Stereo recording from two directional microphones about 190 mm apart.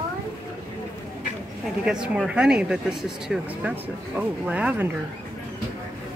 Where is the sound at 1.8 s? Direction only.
5° right (ahead or behind).